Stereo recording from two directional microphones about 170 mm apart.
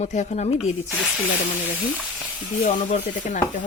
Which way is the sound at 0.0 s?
45° left (ahead or behind).